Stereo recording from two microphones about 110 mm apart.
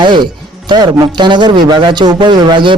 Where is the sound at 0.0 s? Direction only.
45° right (ahead or behind).